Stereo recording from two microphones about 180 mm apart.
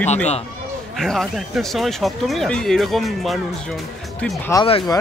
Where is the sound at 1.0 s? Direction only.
Centre (ahead or behind).